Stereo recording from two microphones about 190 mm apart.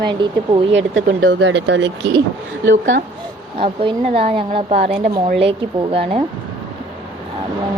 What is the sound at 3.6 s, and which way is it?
A woman's voice, 30° right (ahead or behind).